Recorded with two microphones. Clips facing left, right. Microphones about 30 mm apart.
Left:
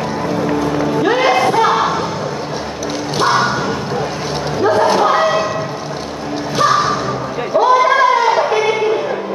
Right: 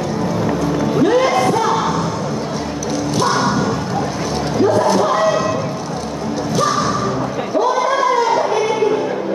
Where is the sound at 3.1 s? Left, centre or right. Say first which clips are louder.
Left 3 dB; left.